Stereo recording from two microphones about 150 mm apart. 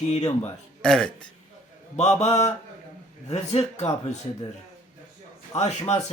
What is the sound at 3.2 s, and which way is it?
Speech, 45° left (ahead or behind).